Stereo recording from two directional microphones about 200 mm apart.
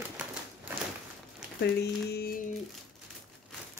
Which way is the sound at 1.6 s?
55° left (ahead or behind).